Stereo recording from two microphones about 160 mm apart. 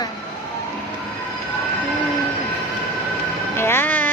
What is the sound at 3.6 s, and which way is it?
Music, 15° left (ahead or behind).